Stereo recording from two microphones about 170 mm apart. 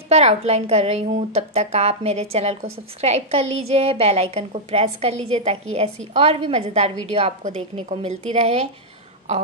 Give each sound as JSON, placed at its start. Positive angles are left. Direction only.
{"t": 0.1, "sound": "a woman's voice", "side_deg": -40}